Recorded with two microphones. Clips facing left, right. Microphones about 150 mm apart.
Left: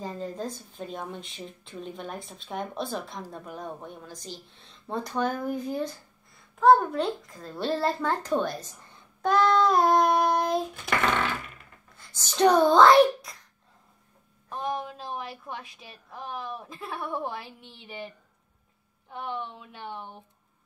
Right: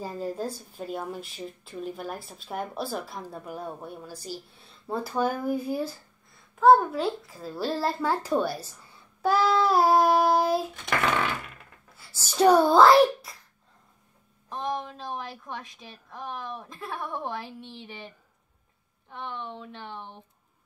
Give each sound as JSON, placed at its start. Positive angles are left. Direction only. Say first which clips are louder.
{"t": 0.0, "sound": "a woman's voice", "louder": "right 2 dB", "side_deg": -10}
{"t": 14.5, "sound": "a woman's voice", "louder": "even", "side_deg": 5}
{"t": 19.1, "sound": "a woman's voice", "louder": "left 2 dB", "side_deg": 5}